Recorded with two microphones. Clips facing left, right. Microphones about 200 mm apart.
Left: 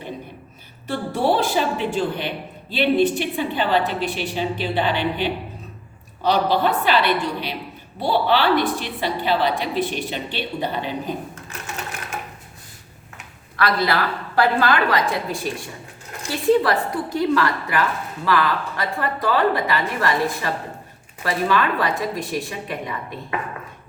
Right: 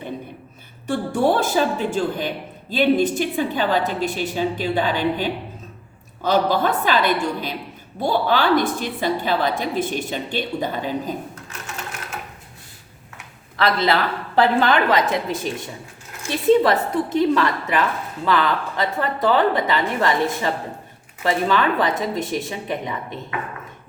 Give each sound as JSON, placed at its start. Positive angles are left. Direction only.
{"t": 1.2, "sound": "a woman's voice", "side_deg": -45}
{"t": 13.6, "sound": "a woman's voice", "side_deg": -25}